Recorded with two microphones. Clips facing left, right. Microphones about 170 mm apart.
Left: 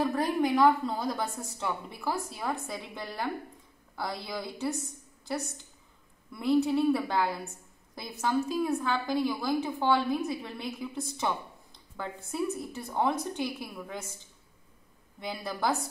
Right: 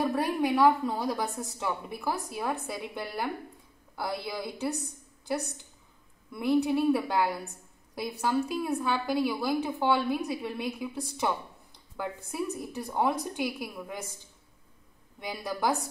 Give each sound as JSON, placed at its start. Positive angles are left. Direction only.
{"t": 0.0, "sound": "a woman's voice", "side_deg": -5}
{"t": 6.4, "sound": "a woman's voice", "side_deg": -10}
{"t": 15.1, "sound": "a woman's voice", "side_deg": -10}